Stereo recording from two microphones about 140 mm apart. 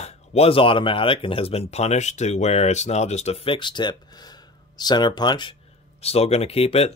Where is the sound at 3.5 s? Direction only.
35° left (ahead or behind).